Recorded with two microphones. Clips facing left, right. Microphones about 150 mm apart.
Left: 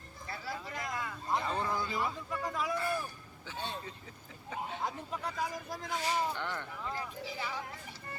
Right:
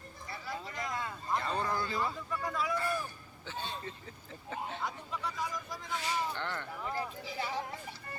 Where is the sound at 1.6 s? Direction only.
5° left (ahead or behind).